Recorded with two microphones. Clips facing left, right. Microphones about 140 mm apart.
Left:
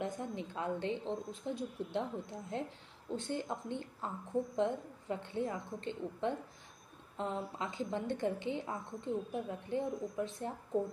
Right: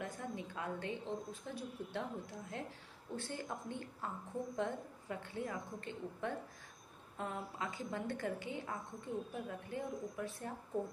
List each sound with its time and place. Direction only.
0.0 s a woman's voice: 25° left (ahead or behind)
3.2 s a woman's voice: 20° left (ahead or behind)